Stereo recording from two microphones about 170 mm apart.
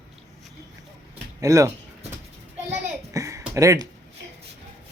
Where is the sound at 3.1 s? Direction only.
20° right (ahead or behind).